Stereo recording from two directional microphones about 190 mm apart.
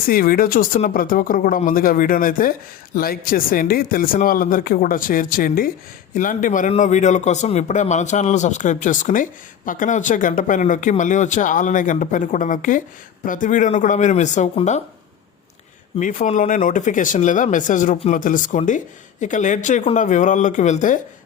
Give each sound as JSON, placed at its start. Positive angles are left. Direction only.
{"t": 0.1, "sound": "a man's voice", "side_deg": 50}
{"t": 16.0, "sound": "a man's voice", "side_deg": 40}